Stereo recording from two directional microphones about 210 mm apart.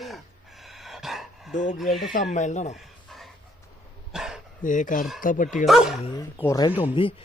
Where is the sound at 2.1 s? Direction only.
35° left (ahead or behind).